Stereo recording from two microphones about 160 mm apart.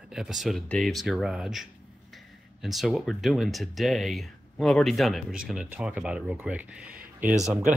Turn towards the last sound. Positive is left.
turn(degrees=-5)  # may be behind; listen again after turning